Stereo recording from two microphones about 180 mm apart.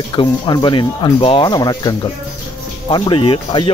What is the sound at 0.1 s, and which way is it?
A man's voice, 25° left (ahead or behind).